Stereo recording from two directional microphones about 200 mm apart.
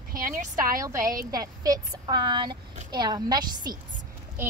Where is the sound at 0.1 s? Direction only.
45° right (ahead or behind).